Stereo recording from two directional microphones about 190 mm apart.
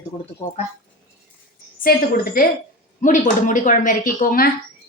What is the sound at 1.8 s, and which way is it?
A woman's voice, 50° left (ahead or behind).